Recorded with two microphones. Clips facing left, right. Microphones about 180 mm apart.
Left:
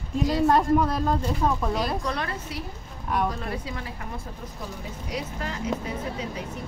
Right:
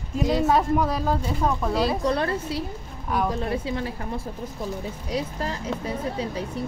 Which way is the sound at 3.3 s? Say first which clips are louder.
Right 6 dB; 30° right (ahead or behind).